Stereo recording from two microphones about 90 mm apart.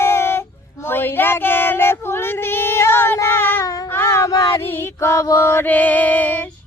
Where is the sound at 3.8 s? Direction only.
30° left (ahead or behind).